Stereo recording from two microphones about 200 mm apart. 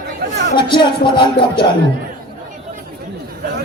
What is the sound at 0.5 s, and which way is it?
A man's voice, 25° left (ahead or behind).